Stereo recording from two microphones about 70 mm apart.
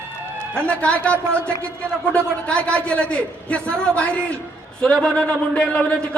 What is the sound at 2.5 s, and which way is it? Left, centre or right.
A man's voice, centre.